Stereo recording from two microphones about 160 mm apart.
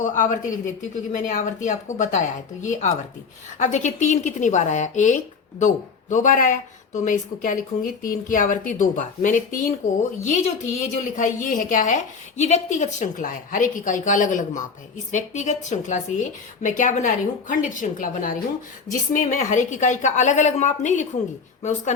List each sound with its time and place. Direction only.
0.0 s a woman's voice: 50° left (ahead or behind)